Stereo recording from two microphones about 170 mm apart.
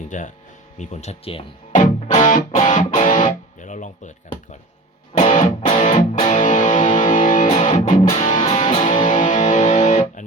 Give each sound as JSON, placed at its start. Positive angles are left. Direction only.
{"t": 0.1, "sound": "speech", "side_deg": 45}
{"t": 1.7, "sound": "music", "side_deg": 45}
{"t": 5.1, "sound": "music", "side_deg": 40}